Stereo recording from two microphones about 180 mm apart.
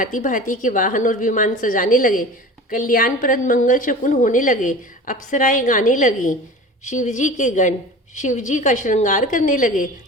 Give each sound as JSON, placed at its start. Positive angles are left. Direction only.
{"t": 0.0, "sound": "a woman's voice", "side_deg": 45}